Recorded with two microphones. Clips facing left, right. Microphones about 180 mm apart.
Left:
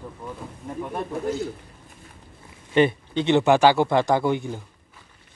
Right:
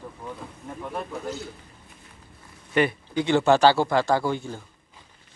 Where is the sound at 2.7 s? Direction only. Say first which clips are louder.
Left 3 dB; 25° left (ahead or behind).